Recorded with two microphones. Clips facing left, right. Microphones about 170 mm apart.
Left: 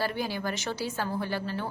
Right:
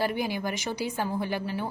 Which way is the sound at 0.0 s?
15° right (ahead or behind).